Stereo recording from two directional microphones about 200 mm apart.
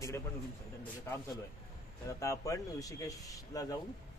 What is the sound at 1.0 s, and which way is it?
Speech, 10° left (ahead or behind).